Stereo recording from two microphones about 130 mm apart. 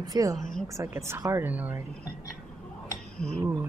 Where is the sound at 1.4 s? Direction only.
15° right (ahead or behind).